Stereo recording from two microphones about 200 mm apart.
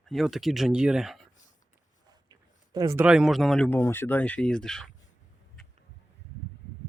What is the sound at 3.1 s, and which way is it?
Speech, centre (ahead or behind).